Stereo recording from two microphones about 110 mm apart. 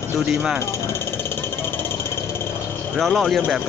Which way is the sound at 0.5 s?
25° left (ahead or behind).